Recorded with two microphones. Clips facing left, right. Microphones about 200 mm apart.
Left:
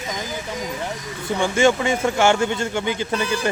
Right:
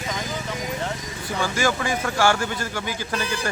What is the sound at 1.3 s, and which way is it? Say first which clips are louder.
Speech: left 6 dB; 25° left (ahead or behind).